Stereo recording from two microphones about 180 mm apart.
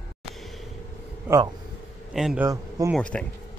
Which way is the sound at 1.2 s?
20° right (ahead or behind).